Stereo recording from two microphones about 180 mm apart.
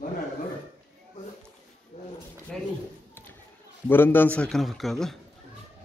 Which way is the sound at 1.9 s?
35° left (ahead or behind).